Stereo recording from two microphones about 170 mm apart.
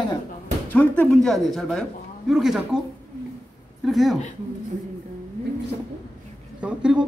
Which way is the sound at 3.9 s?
Centre (ahead or behind).